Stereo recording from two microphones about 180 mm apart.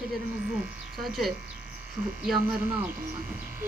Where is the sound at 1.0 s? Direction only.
Centre (ahead or behind).